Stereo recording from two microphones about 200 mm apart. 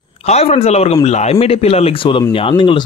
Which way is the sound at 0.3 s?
30° left (ahead or behind).